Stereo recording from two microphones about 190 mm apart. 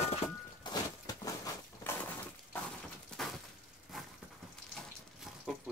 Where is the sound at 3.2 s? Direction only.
Centre (ahead or behind).